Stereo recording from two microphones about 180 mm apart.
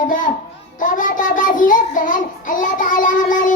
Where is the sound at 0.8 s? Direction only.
50° left (ahead or behind).